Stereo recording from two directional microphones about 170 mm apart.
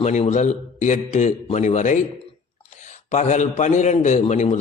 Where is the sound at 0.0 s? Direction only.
40° left (ahead or behind).